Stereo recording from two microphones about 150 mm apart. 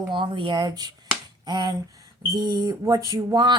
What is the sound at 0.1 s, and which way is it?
Speech, 35° right (ahead or behind).